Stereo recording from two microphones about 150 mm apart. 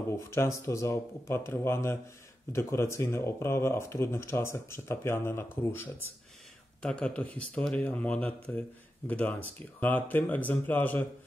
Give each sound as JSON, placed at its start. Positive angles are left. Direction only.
{"t": 0.3, "sound": "speech", "side_deg": 20}